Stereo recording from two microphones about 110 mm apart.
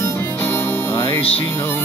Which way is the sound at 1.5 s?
20° left (ahead or behind).